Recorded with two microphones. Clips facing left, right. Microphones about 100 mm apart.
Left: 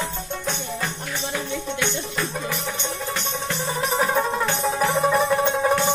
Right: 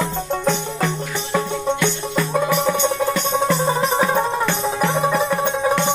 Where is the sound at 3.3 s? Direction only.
45° right (ahead or behind).